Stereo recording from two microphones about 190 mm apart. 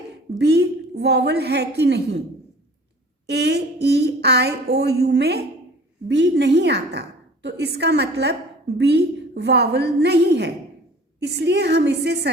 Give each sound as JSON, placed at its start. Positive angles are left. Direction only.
{"t": 0.3, "sound": "a woman's voice", "side_deg": -60}
{"t": 3.2, "sound": "a woman's voice", "side_deg": -60}